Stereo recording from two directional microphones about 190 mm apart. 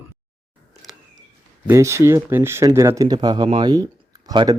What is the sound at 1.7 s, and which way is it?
Speech, 15° right (ahead or behind).